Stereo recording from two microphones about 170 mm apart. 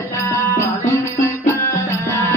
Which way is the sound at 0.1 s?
15° left (ahead or behind).